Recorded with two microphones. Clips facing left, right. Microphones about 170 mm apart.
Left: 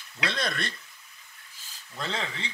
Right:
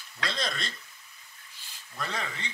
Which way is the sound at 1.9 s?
25° left (ahead or behind).